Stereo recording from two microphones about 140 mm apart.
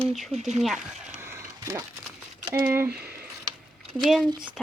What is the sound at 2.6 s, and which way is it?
Speech, 15° right (ahead or behind).